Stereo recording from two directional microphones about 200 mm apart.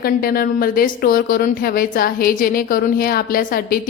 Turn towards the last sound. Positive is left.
turn(degrees=45)  # may be behind; listen again after turning